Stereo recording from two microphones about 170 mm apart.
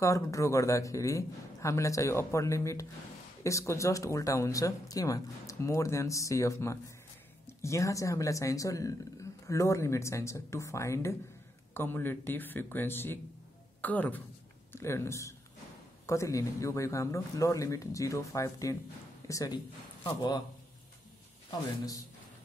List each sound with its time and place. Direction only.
0.0 s a man's voice: 20° left (ahead or behind)